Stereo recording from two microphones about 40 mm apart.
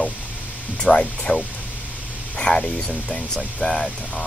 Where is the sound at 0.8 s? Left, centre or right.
Centre.